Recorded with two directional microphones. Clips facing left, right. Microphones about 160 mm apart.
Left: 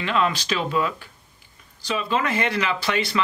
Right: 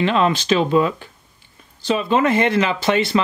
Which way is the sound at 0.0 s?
25° right (ahead or behind).